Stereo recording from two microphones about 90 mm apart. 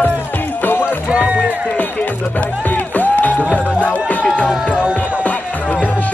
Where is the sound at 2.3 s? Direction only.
20° left (ahead or behind).